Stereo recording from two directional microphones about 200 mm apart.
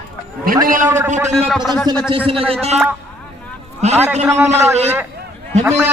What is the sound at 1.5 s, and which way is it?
Speech, centre (ahead or behind).